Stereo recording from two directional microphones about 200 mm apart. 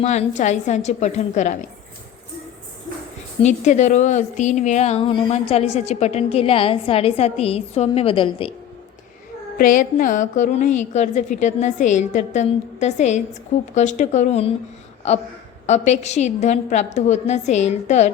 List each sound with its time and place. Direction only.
0.0 s a woman's voice: 35° left (ahead or behind)
3.4 s a woman's voice: 35° left (ahead or behind)
9.6 s a woman's voice: 40° left (ahead or behind)